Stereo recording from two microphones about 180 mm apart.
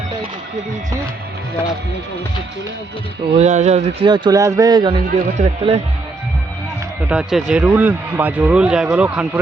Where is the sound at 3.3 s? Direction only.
40° right (ahead or behind); by 5.0 s 25° right (ahead or behind).